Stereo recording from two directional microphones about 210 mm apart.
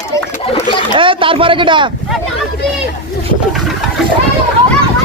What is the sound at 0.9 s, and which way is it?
Speech, 25° right (ahead or behind).